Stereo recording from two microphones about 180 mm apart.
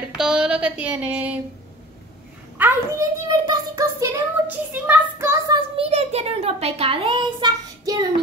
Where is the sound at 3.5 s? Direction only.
20° right (ahead or behind).